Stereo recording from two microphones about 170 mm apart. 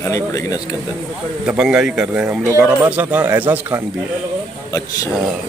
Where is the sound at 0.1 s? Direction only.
20° left (ahead or behind).